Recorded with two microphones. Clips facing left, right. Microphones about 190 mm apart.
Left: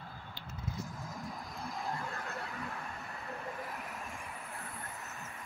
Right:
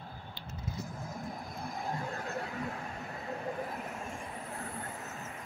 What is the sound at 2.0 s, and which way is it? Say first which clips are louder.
Vehicle: right 4 dB; 40° right (ahead or behind).